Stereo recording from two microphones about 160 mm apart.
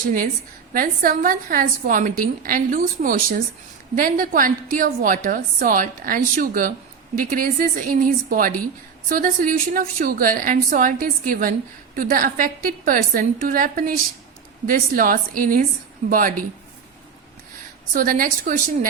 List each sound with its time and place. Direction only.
0.0 s a woman's voice: 55° right (ahead or behind)
17.9 s a woman's voice: 60° right (ahead or behind)